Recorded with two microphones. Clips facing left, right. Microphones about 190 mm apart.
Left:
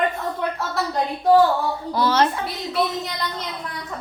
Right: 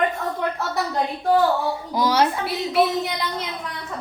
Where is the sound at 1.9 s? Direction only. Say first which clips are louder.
Even; 15° right (ahead or behind).